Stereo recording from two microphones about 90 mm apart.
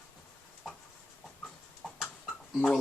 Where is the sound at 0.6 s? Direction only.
5° right (ahead or behind).